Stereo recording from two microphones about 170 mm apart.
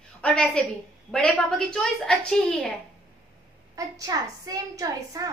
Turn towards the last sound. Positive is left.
turn(degrees=-20)  # may be behind; listen again after turning